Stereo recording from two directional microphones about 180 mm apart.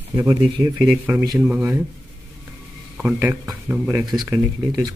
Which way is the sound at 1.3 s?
5° right (ahead or behind).